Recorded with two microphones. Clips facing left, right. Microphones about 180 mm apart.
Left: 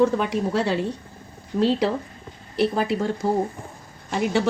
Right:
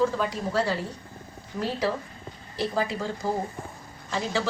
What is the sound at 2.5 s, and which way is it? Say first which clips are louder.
Speech: left 6 dB; 70° left (ahead or behind).